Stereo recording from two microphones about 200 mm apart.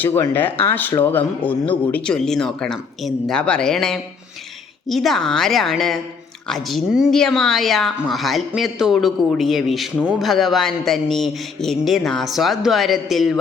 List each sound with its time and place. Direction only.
0.0 s a man's voice: 10° left (ahead or behind)